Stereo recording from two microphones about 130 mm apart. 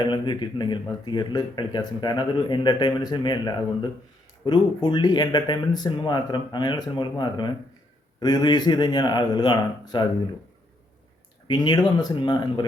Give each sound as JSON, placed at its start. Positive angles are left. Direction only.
{"t": 0.0, "sound": "speech", "side_deg": 35}
{"t": 11.4, "sound": "speech", "side_deg": 35}